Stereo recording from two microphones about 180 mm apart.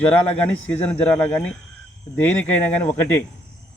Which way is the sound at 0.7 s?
10° left (ahead or behind).